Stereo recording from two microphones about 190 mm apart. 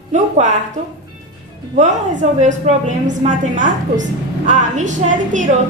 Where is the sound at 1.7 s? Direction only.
40° right (ahead or behind).